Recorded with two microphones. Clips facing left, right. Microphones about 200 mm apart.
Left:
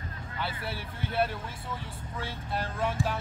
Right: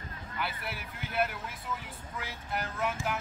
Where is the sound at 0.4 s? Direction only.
30° left (ahead or behind).